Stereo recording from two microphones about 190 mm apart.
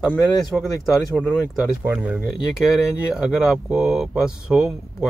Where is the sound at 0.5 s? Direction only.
Centre (ahead or behind).